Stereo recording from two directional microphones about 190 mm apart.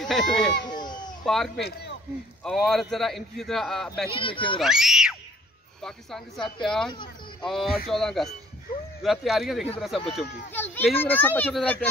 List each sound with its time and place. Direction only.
0.0 s speech: centre (ahead or behind)
0.7 s a sound: 20° left (ahead or behind)
1.2 s speech: centre (ahead or behind)
1.6 s a man's voice: 60° left (ahead or behind)
2.4 s a man's voice: centre (ahead or behind)
4.1 s speech: 25° left (ahead or behind)
4.6 s a man's voice: 5° right (ahead or behind)
10.5 s a child's voice: 10° left (ahead or behind)